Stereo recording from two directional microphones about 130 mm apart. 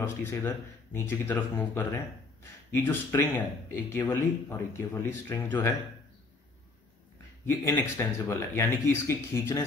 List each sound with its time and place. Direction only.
0.0 s speech: 15° left (ahead or behind)
7.4 s speech: 20° left (ahead or behind)